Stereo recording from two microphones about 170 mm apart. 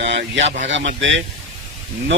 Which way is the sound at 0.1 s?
90° right.